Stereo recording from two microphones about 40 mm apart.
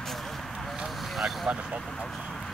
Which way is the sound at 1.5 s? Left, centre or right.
Right.